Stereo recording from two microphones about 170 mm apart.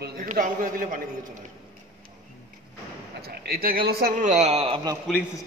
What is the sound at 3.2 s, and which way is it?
Speech, 65° right (ahead or behind).